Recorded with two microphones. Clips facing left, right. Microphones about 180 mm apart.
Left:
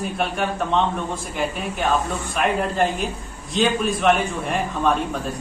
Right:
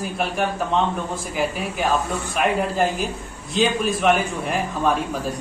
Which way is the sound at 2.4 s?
Centre (ahead or behind).